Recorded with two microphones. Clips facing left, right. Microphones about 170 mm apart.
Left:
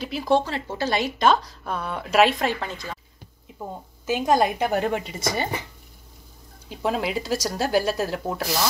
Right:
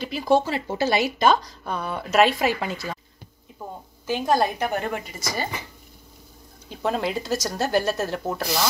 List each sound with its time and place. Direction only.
0.0 s speech: centre (ahead or behind)
4.0 s a woman's voice: 15° left (ahead or behind)
6.7 s speech: 5° left (ahead or behind)